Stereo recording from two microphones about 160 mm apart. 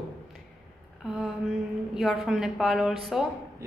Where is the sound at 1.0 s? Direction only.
Centre (ahead or behind).